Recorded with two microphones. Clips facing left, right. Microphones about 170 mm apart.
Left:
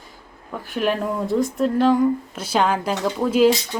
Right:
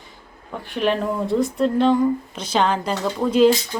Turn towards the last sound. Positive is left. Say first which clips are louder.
# right 1 dB
turn(degrees=5)  # may be behind; listen again after turning